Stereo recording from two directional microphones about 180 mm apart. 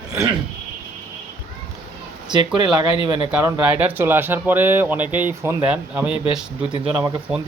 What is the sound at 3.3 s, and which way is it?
Speech, 10° right (ahead or behind).